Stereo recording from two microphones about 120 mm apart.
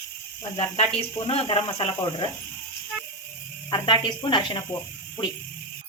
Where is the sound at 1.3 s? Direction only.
50° left (ahead or behind).